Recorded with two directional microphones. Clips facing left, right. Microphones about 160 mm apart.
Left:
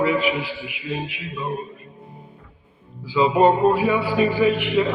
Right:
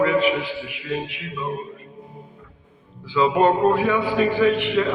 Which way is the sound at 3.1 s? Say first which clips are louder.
Left 1 dB; 5° left (ahead or behind).